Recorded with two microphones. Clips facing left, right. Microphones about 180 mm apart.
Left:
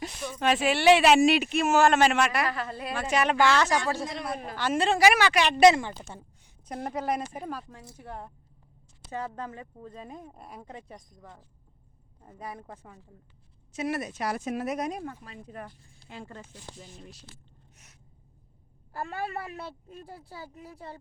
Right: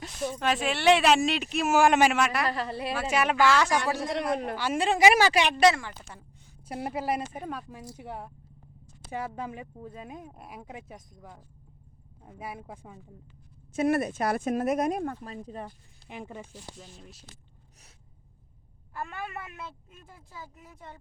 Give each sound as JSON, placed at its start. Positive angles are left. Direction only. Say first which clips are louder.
{"t": 0.3, "sound": "speech", "louder": "left 5 dB", "side_deg": 0}
{"t": 2.1, "sound": "speech", "louder": "left 1 dB", "side_deg": 0}
{"t": 2.5, "sound": "a woman's voice", "louder": "right 2 dB", "side_deg": -30}
{"t": 2.9, "sound": "speech", "louder": "left 1 dB", "side_deg": -5}
{"t": 4.1, "sound": "a man's voice", "louder": "right 6 dB", "side_deg": -75}
{"t": 4.5, "sound": "speech", "louder": "left 1 dB", "side_deg": -10}
{"t": 5.1, "sound": "speech", "louder": "right 2 dB", "side_deg": -40}
{"t": 5.5, "sound": "speech", "louder": "left 4 dB", "side_deg": 20}
{"t": 6.7, "sound": "speech", "louder": "even", "side_deg": -10}
{"t": 7.7, "sound": "speech", "louder": "right 3 dB", "side_deg": -15}
{"t": 13.7, "sound": "speech", "louder": "right 6 dB", "side_deg": -55}
{"t": 15.6, "sound": "speech", "louder": "right 2 dB", "side_deg": -15}
{"t": 16.7, "sound": "speech", "louder": "left 1 dB", "side_deg": 0}
{"t": 18.9, "sound": "speech", "louder": "left 3 dB", "side_deg": 35}